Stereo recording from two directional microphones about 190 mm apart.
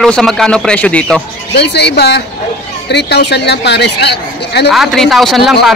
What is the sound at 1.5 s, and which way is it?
Speech, 60° left (ahead or behind).